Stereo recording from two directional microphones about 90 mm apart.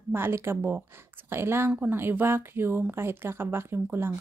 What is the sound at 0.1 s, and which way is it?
A woman's voice, 25° right (ahead or behind).